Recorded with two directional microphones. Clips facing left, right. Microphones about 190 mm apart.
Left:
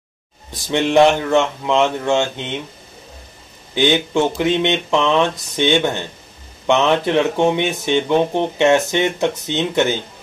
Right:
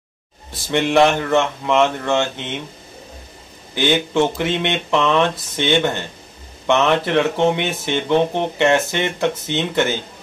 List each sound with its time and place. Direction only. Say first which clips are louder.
0.5 s speech: left 1 dB; 15° left (ahead or behind)
3.7 s speech: left 1 dB; 15° left (ahead or behind)